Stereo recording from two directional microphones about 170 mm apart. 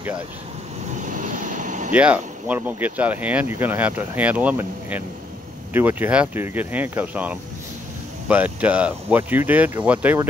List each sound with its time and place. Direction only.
0.9 s vehicle: 50° right (ahead or behind)
2.0 s speech: 5° right (ahead or behind)